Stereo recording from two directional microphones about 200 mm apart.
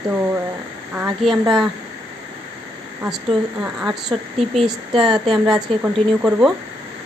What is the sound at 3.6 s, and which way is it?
Speech, centre (ahead or behind).